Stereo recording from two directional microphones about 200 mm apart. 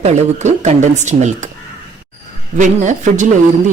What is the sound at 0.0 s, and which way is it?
A woman's voice, 35° right (ahead or behind).